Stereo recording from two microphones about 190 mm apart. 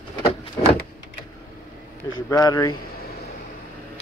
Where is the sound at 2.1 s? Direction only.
20° left (ahead or behind).